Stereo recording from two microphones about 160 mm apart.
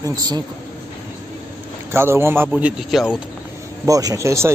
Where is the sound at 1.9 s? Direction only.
15° right (ahead or behind).